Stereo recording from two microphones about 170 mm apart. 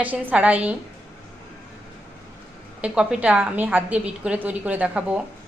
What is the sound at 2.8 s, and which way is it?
A woman's voice, 5° right (ahead or behind).